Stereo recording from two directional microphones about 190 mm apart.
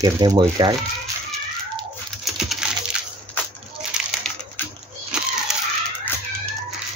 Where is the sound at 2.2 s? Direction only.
Centre (ahead or behind).